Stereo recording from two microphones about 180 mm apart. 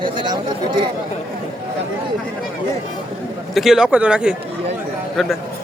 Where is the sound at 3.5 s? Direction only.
Centre (ahead or behind).